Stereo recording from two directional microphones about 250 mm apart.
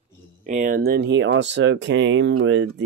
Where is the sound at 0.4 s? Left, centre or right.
Right.